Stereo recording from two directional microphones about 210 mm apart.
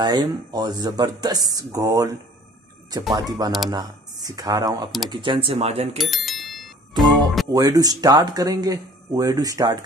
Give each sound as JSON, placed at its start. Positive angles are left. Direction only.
{"t": 0.0, "sound": "speech", "side_deg": -20}
{"t": 5.9, "sound": "bicycle bell", "side_deg": 0}
{"t": 7.0, "sound": "music", "side_deg": 0}
{"t": 7.5, "sound": "speech", "side_deg": -15}